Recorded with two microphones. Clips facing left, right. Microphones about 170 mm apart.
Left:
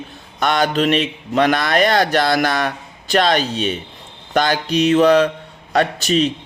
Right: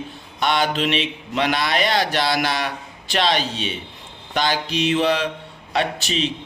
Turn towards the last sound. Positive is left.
turn(degrees=45)  # may be behind; listen again after turning